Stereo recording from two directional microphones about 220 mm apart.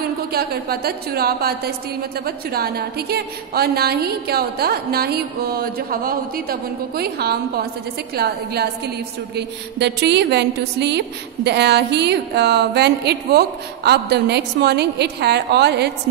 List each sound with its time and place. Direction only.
0.0 s a woman's voice: 45° right (ahead or behind)